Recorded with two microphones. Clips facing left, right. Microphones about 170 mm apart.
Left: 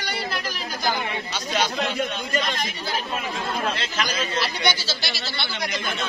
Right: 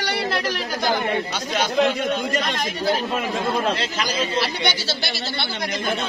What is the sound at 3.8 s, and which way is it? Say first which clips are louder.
Speech: right 3 dB; 30° right (ahead or behind).